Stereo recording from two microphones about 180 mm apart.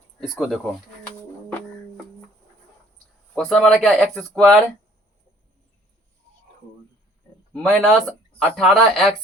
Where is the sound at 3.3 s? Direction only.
5° left (ahead or behind).